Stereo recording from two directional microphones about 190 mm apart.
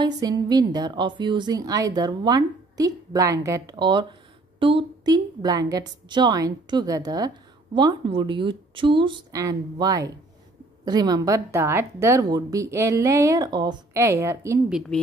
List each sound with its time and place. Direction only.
0.0 s a woman's voice: 20° right (ahead or behind)
14.7 s a woman's voice: centre (ahead or behind)